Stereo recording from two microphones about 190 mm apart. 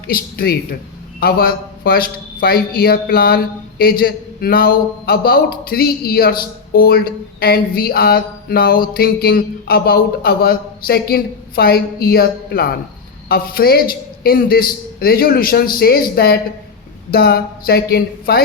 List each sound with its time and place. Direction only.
0.1 s speech: 55° left (ahead or behind)